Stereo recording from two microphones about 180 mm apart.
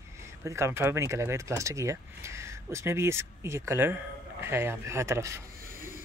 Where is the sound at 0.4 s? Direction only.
15° right (ahead or behind).